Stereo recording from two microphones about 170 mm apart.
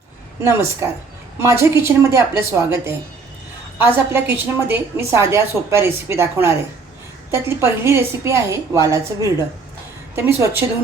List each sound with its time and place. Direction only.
0.4 s a woman's voice: 15° right (ahead or behind)